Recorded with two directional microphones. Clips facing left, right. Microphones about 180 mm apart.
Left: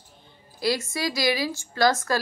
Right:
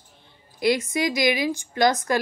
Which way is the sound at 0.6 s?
20° right (ahead or behind).